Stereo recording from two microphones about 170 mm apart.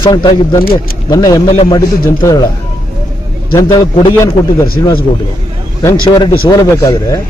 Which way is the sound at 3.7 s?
20° left (ahead or behind).